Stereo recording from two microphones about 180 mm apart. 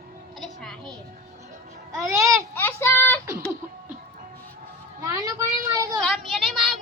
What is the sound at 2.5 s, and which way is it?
Child singing, 10° left (ahead or behind).